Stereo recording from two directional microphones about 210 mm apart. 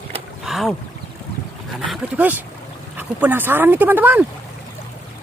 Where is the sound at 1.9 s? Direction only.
5° right (ahead or behind).